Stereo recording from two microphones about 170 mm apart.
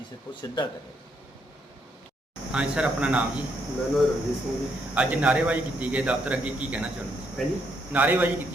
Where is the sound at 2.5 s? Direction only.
5° right (ahead or behind).